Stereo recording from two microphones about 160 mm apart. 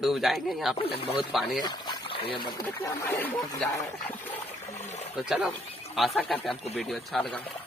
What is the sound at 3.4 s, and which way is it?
Speech, 25° left (ahead or behind).